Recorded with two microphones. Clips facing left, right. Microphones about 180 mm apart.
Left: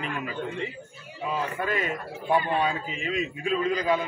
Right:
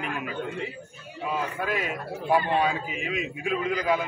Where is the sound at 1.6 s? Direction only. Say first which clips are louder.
Left 1 dB; 5° right (ahead or behind).